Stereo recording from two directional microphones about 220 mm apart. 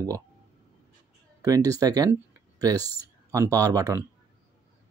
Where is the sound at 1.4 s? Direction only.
15° right (ahead or behind).